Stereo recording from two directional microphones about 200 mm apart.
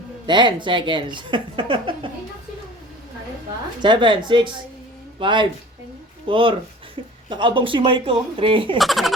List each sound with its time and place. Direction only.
0.3 s a woman's voice: 20° right (ahead or behind)
3.8 s a woman's voice: 20° right (ahead or behind)
8.8 s speech: centre (ahead or behind)